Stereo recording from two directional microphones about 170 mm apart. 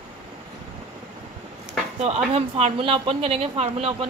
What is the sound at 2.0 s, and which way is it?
Speech, 35° right (ahead or behind).